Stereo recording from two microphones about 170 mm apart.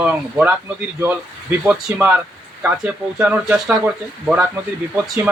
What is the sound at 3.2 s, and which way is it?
A man's voice, 5° right (ahead or behind).